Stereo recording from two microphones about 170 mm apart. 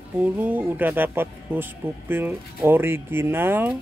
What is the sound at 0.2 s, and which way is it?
Speech, 10° right (ahead or behind).